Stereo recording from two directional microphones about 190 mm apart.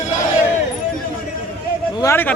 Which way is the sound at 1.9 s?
15° left (ahead or behind).